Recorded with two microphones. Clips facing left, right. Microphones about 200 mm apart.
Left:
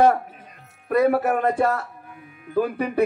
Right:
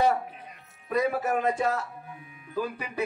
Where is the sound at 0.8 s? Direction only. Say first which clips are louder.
Left 7 dB; 60° left (ahead or behind).